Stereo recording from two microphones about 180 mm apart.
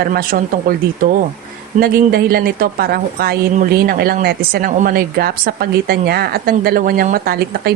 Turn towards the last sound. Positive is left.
turn(degrees=-55)  # may be behind; listen again after turning